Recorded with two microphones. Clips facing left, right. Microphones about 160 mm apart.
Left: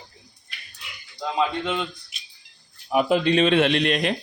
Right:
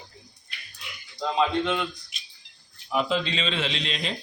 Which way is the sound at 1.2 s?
5° left (ahead or behind).